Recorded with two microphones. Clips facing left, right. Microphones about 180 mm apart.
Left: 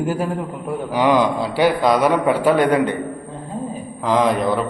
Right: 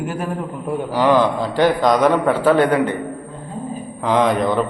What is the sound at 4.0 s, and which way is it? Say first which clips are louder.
Speech: right 1 dB; centre (ahead or behind).